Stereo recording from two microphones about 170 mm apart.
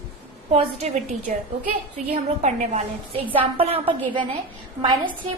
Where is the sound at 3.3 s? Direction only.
30° right (ahead or behind).